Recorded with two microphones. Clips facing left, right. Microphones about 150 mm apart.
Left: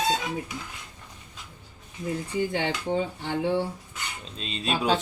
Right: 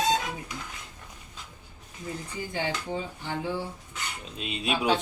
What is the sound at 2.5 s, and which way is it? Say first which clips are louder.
Speech: even; 65° left (ahead or behind).